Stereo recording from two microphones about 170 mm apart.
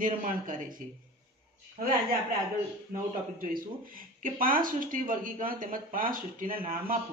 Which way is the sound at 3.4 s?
55° right (ahead or behind).